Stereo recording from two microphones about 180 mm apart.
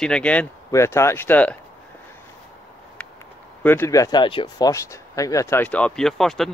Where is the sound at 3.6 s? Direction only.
15° left (ahead or behind).